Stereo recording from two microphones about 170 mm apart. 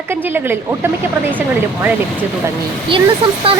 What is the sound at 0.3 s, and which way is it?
Speech, 10° right (ahead or behind).